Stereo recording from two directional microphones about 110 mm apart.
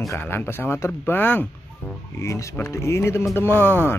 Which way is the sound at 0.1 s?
20° left (ahead or behind).